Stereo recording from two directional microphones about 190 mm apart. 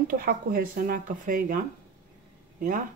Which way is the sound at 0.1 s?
50° right (ahead or behind).